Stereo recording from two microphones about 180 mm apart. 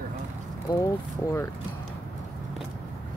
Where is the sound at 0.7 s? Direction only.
15° left (ahead or behind).